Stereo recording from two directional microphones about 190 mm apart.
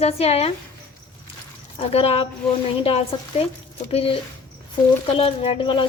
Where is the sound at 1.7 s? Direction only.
30° left (ahead or behind).